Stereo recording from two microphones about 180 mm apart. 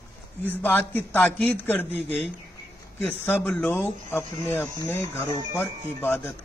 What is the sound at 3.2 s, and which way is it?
Speech, 10° left (ahead or behind).